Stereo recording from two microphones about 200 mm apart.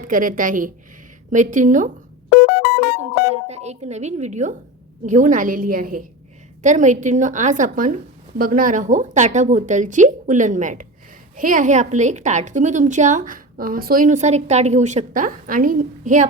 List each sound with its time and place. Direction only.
0.0 s a woman's voice: 40° right (ahead or behind)
2.3 s music: 5° left (ahead or behind)
3.5 s a woman's voice: 35° right (ahead or behind)